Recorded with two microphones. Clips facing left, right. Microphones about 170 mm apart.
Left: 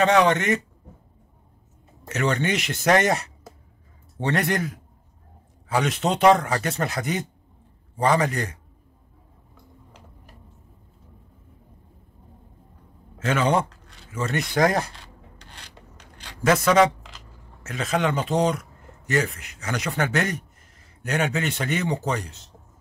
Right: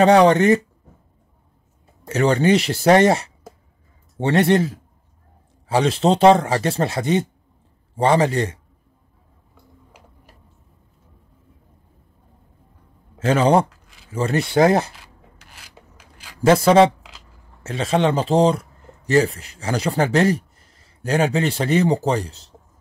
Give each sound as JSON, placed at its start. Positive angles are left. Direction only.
{"t": 0.0, "sound": "speech", "side_deg": -35}
{"t": 2.0, "sound": "speech", "side_deg": -35}
{"t": 13.2, "sound": "speech", "side_deg": -35}
{"t": 13.7, "sound": "a sound", "side_deg": -5}
{"t": 14.1, "sound": "speech", "side_deg": -30}
{"t": 15.0, "sound": "filing", "side_deg": -5}
{"t": 16.4, "sound": "speech", "side_deg": -30}